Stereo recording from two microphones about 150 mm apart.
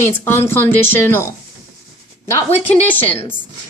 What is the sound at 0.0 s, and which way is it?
A woman's voice, 15° left (ahead or behind).